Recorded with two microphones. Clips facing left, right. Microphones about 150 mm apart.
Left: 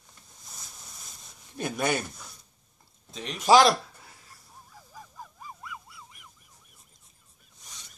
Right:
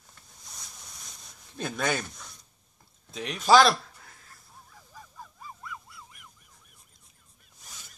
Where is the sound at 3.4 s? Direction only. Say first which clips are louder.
Left 1 dB; 15° left (ahead or behind).